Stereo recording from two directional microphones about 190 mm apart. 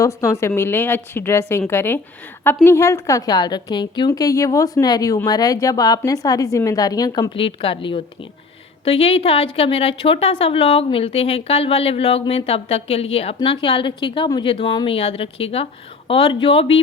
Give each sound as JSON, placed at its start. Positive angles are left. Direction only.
{"t": 0.0, "sound": "a woman's voice", "side_deg": 15}